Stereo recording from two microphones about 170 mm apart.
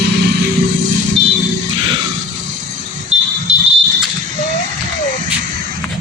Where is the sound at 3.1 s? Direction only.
40° right (ahead or behind).